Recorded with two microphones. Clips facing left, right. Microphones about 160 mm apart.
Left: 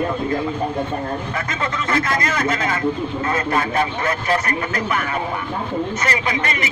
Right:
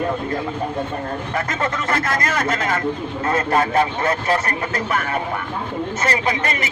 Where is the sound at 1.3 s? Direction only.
45° right (ahead or behind).